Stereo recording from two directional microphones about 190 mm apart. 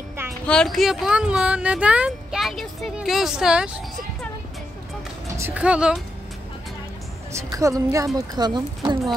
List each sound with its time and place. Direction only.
0.5 s speech: 5° left (ahead or behind)
5.4 s speech: 5° right (ahead or behind)
7.5 s a woman's voice: 15° right (ahead or behind)